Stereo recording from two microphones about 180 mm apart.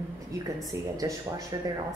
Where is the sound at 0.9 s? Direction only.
20° right (ahead or behind).